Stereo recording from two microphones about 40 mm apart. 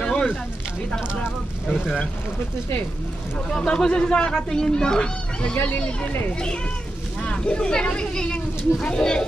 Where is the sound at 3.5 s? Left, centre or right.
Centre.